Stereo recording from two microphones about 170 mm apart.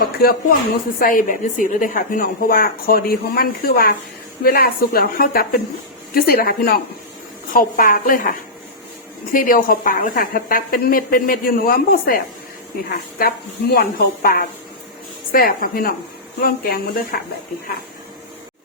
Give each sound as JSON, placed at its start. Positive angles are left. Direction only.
{"t": 0.0, "sound": "a woman's voice", "side_deg": 65}
{"t": 13.1, "sound": "a woman's voice", "side_deg": 65}